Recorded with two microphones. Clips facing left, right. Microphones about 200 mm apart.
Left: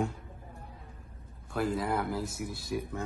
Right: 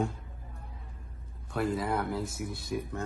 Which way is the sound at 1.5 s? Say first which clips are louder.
Even; centre (ahead or behind).